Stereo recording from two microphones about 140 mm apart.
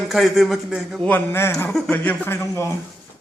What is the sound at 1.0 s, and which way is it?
A man's voice, 15° left (ahead or behind).